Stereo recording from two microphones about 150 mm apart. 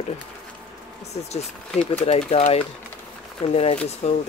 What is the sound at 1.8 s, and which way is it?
Speech, 45° left (ahead or behind).